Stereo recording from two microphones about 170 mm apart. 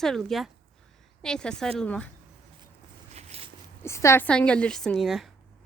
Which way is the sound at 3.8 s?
15° left (ahead or behind).